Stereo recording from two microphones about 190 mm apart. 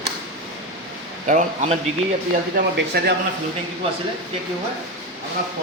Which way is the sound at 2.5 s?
60° right (ahead or behind).